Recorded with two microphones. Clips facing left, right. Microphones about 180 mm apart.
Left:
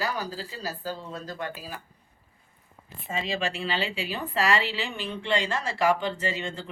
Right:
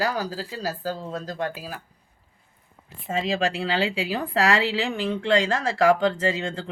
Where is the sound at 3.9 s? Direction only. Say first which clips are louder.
Right 5 dB; 90° right.